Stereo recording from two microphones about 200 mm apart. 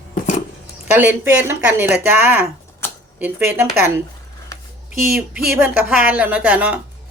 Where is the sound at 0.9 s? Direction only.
10° right (ahead or behind).